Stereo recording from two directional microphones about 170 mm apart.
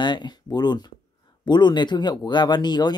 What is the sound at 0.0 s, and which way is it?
Speech, 25° left (ahead or behind).